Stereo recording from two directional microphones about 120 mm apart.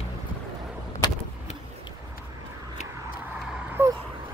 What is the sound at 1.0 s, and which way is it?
Vehicle, 35° left (ahead or behind).